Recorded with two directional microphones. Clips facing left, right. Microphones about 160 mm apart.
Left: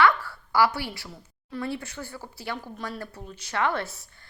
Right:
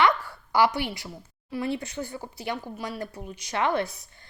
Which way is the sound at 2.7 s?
5° right (ahead or behind).